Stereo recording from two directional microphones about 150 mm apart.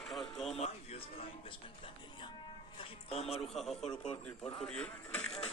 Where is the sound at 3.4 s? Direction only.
Centre (ahead or behind).